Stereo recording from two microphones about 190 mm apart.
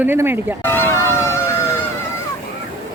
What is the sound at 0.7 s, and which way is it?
Vehicle, 15° left (ahead or behind).